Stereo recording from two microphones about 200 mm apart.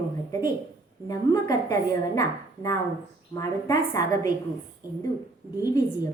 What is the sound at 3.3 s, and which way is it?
Speech, 20° left (ahead or behind).